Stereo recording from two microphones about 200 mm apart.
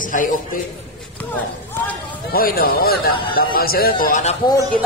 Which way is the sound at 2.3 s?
50° left (ahead or behind).